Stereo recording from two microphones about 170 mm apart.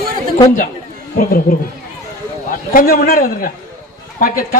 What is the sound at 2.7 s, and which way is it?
A man's voice, 60° left (ahead or behind).